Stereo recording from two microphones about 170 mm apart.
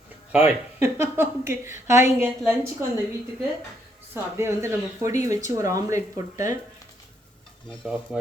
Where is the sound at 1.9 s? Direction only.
45° left (ahead or behind).